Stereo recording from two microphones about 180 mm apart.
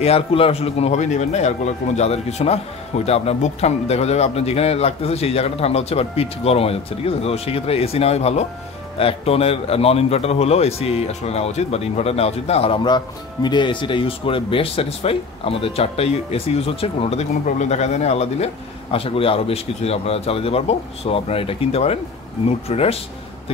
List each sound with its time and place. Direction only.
0.0 s a man's voice: 30° left (ahead or behind)